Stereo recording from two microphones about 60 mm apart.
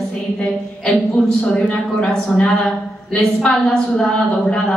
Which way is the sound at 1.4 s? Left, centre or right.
Centre.